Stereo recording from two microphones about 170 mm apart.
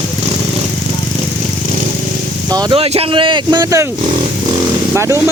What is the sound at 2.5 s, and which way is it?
Speech, 30° right (ahead or behind).